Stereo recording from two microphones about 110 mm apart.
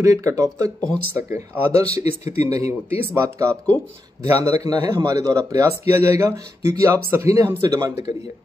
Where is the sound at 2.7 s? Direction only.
60° left (ahead or behind).